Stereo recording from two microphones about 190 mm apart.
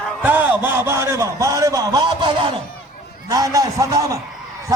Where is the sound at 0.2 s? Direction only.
10° right (ahead or behind).